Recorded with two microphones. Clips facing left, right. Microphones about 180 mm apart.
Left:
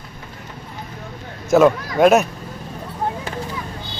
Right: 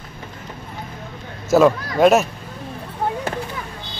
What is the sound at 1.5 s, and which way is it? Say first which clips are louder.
Speech: left 1 dB; centre (ahead or behind).